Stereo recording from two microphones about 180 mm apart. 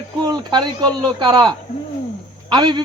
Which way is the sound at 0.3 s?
25° right (ahead or behind).